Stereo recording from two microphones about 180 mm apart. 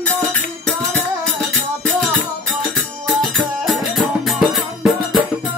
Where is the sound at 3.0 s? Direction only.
Centre (ahead or behind).